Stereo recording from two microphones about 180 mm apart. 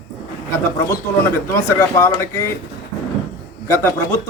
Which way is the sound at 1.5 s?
15° left (ahead or behind).